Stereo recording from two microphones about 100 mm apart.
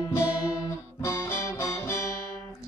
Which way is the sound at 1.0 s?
30° left (ahead or behind).